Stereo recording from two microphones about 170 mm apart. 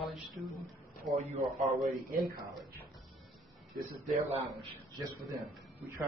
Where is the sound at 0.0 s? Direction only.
Centre (ahead or behind).